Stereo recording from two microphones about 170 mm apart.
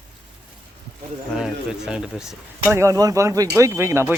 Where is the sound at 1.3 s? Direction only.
5° right (ahead or behind).